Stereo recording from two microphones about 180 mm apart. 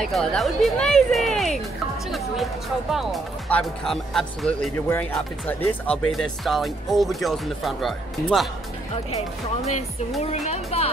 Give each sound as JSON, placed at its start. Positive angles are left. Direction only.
{"t": 0.0, "sound": "speech", "side_deg": 0}
{"t": 10.3, "sound": "speech", "side_deg": 35}